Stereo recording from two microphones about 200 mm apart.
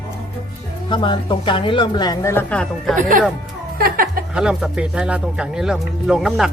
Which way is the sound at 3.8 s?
45° right (ahead or behind).